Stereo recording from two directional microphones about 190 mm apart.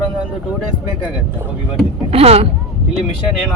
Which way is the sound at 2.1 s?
30° right (ahead or behind).